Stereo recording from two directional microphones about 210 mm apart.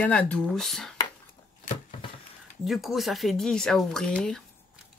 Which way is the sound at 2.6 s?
Centre (ahead or behind).